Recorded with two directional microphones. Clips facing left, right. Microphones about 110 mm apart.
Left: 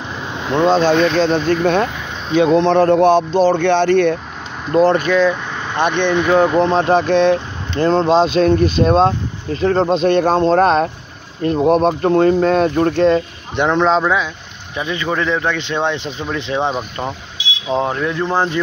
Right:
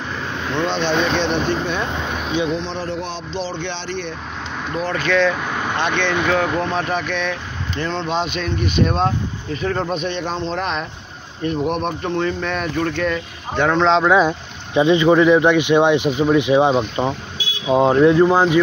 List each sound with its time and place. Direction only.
0.3 s vehicle: 20° left (ahead or behind)
0.7 s speech: 40° left (ahead or behind)
1.9 s vehicle: 25° right (ahead or behind)
2.3 s speech: 55° left (ahead or behind)
4.7 s speech: 35° left (ahead or behind)
5.0 s speech: 5° left (ahead or behind); by 9.9 s 35° left (ahead or behind)
10.0 s speech: 50° left (ahead or behind); by 13.2 s 30° left (ahead or behind)
13.6 s speech: 15° left (ahead or behind)
13.8 s speech: 5° left (ahead or behind)
14.7 s speech: 20° right (ahead or behind)
18.2 s speech: 10° right (ahead or behind)